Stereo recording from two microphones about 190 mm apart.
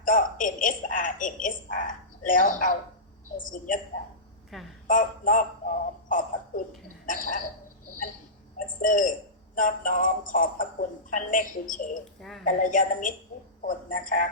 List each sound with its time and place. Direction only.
0.0 s a woman's voice: 45° left (ahead or behind)
4.5 s a woman's voice: centre (ahead or behind)
4.9 s a sound: 45° left (ahead or behind)
7.1 s a woman's voice: 45° left (ahead or behind)
8.6 s a woman's voice: 45° left (ahead or behind)
12.2 s a woman's voice: centre (ahead or behind)
12.5 s a woman's voice: 45° left (ahead or behind)